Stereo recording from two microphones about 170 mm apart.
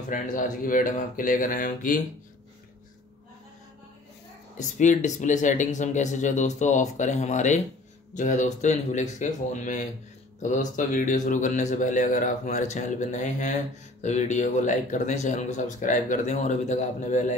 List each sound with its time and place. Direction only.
0.1 s a man's voice: 50° left (ahead or behind)
4.6 s a man's voice: 45° left (ahead or behind)